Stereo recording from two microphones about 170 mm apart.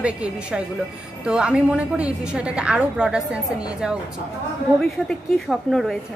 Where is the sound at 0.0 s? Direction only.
5° right (ahead or behind).